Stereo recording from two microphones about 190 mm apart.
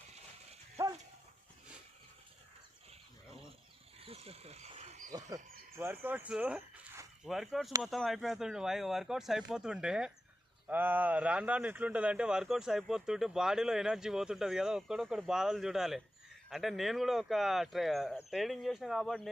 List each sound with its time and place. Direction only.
4.0 s wild animals: 30° right (ahead or behind)
5.7 s speech: 10° right (ahead or behind)
7.3 s speech: centre (ahead or behind)